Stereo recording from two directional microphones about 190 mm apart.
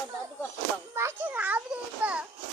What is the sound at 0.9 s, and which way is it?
A child's voice, 15° right (ahead or behind).